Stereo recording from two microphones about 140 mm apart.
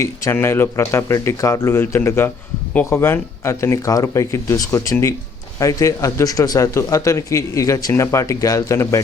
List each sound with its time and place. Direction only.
0.0 s speech: 20° left (ahead or behind)